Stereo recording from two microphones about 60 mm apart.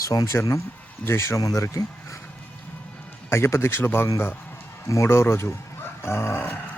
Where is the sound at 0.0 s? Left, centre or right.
Left.